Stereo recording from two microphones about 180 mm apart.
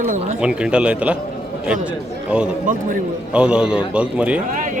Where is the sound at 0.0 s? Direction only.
45° right (ahead or behind).